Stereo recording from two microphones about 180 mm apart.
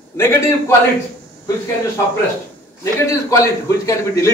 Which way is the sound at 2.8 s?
15° left (ahead or behind).